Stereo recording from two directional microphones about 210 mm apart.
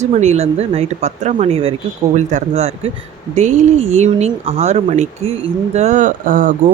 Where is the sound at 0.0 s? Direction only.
35° right (ahead or behind).